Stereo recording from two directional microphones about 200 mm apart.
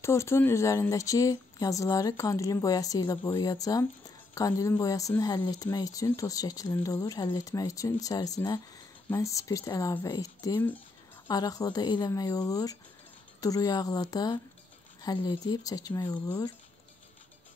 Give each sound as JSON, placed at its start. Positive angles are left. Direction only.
{"t": 0.0, "sound": "speech", "side_deg": 15}